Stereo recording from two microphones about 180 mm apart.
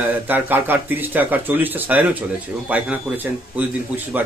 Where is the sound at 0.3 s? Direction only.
10° right (ahead or behind).